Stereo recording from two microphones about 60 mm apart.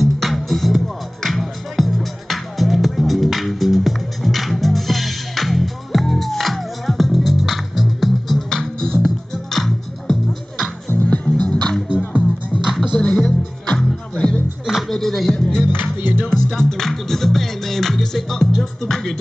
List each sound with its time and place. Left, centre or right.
0.0 s music: centre
10.9 s music: left
11.4 s music: centre
12.6 s music: centre
12.9 s music: centre
14.7 s music: centre
15.7 s music: right
16.3 s music: centre